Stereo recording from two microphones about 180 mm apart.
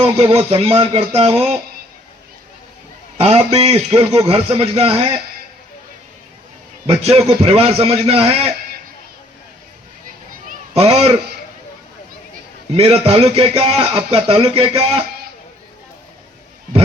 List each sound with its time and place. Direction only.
0.0 s a man's voice: 30° right (ahead or behind)
3.5 s a man's voice: 35° right (ahead or behind)
6.8 s a man's voice: 35° right (ahead or behind)
10.5 s a sound: 35° right (ahead or behind)
12.7 s a man's voice: 35° right (ahead or behind)